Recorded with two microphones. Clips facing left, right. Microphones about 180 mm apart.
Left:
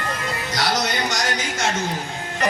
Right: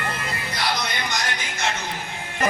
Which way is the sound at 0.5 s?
85° left.